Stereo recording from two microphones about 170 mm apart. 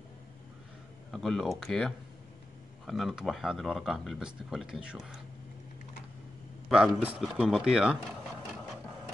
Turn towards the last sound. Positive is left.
turn(degrees=-5)  # may be behind; listen again after turning